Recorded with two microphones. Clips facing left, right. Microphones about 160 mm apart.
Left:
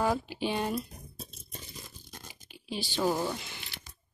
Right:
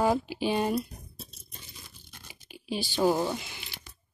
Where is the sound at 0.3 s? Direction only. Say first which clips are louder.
Right 4 dB; 10° right (ahead or behind).